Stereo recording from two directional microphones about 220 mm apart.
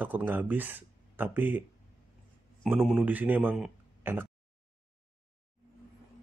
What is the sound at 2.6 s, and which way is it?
A man's voice, centre (ahead or behind).